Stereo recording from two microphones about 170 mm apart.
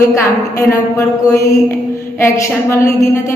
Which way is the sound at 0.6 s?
15° left (ahead or behind).